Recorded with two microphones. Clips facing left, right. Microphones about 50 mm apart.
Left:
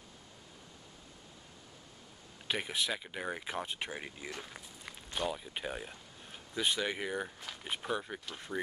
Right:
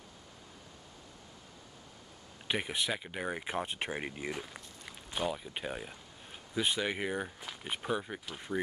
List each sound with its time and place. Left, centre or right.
2.4 s speech: centre
3.6 s speech: right
5.1 s speech: centre